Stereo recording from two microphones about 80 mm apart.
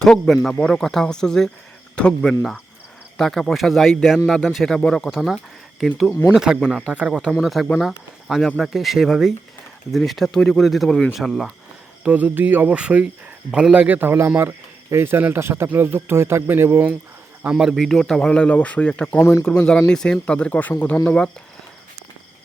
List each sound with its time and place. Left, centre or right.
0.0 s speech: centre
6.2 s speech: centre
12.0 s speech: centre
13.8 s speech: right
17.4 s speech: centre
17.8 s speech: centre
19.2 s speech: left
19.9 s speech: centre